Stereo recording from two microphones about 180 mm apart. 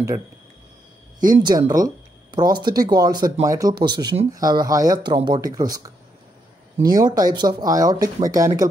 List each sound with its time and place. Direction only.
1.2 s speech: 20° right (ahead or behind)